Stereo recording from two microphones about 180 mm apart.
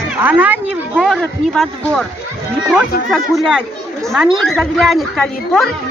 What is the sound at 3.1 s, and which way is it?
Speech, centre (ahead or behind).